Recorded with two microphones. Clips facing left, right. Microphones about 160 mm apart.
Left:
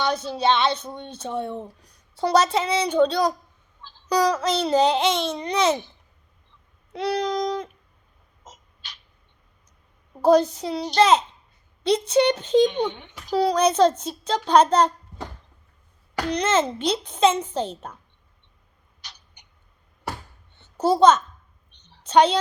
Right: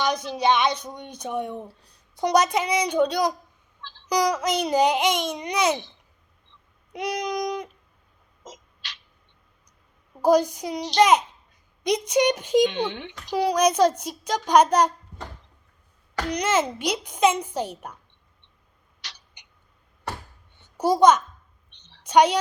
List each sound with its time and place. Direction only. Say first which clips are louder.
0.3 s a child's voice: even; 15° right (ahead or behind)
6.9 s a child's voice: left 3 dB; 15° right (ahead or behind)
8.4 s owl: right 4 dB; 90° right
10.2 s a child's voice: left 2 dB; 10° right (ahead or behind)
12.6 s speech: left 2 dB; 90° right
13.3 s a child's voice: left 1 dB; 10° right (ahead or behind)
16.3 s a child's voice: left 2 dB; 10° right (ahead or behind)
19.0 s rodents: right 1 dB; 90° right
20.6 s a sound: left 1 dB; 10° right (ahead or behind)
21.7 s a sound: left 2 dB; 90° right
22.0 s a sound: left 1 dB; 10° right (ahead or behind)